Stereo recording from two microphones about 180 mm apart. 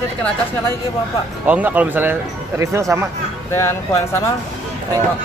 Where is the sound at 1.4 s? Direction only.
10° right (ahead or behind).